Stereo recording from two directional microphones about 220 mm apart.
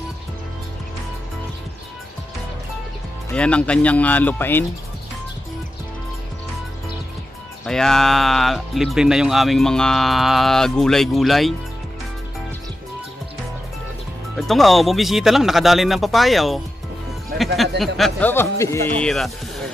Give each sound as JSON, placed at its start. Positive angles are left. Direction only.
{"t": 3.3, "sound": "speech", "side_deg": 5}
{"t": 7.6, "sound": "speech", "side_deg": 0}
{"t": 14.3, "sound": "speech", "side_deg": 0}